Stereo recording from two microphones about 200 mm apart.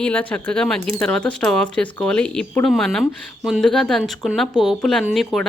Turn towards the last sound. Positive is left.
turn(degrees=0)  # may be behind; listen again after turning